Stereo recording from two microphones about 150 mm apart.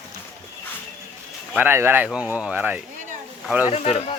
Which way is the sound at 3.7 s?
45° left (ahead or behind).